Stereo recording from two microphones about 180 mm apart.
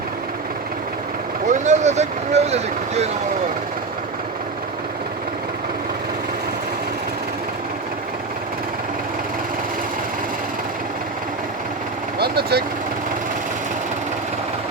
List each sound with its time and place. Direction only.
1.5 s speech: 40° right (ahead or behind)
12.2 s vehicle: 60° right (ahead or behind)